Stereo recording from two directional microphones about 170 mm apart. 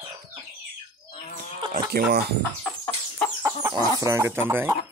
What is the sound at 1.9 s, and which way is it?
Speech, 70° right (ahead or behind).